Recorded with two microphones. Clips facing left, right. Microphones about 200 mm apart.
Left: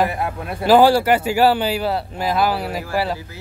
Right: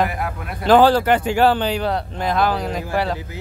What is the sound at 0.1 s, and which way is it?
Speech, 25° left (ahead or behind).